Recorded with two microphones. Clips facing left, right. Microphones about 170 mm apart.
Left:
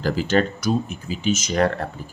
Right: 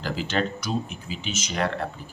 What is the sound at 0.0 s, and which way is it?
Speech, 45° left (ahead or behind).